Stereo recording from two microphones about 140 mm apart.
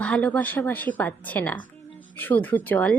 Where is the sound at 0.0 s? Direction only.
10° left (ahead or behind).